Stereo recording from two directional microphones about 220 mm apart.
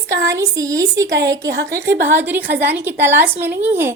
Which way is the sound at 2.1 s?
10° right (ahead or behind).